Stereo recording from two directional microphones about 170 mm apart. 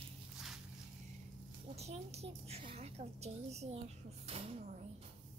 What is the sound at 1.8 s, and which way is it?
A woman's voice, 40° right (ahead or behind).